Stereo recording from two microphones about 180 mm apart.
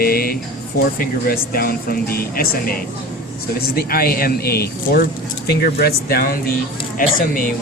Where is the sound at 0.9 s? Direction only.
55° left (ahead or behind).